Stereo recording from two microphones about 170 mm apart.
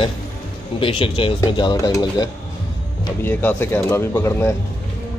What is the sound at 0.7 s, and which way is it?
Speech, 30° left (ahead or behind).